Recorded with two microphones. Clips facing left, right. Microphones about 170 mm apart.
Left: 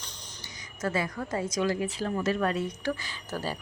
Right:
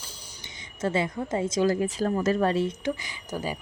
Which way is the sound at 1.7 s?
40° right (ahead or behind).